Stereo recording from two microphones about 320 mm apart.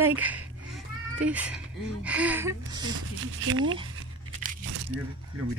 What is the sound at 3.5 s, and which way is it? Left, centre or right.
Speech, right.